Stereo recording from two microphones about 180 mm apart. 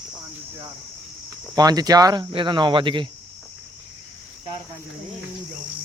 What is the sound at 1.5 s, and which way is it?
Speech, 20° right (ahead or behind).